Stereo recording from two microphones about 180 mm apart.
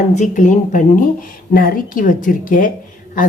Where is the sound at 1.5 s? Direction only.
55° left (ahead or behind).